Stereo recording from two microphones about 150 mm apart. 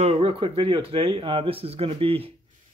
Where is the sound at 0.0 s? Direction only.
40° right (ahead or behind).